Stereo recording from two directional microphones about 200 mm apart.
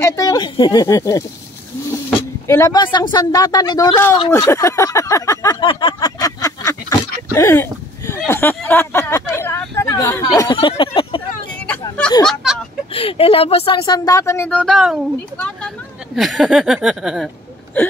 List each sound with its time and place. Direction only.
0.0 s speech: 15° left (ahead or behind)
1.9 s a sound: 15° left (ahead or behind)
12.4 s speech: centre (ahead or behind)
12.9 s a woman's voice: 30° left (ahead or behind); by 17.3 s centre (ahead or behind)
17.8 s wail: 10° left (ahead or behind)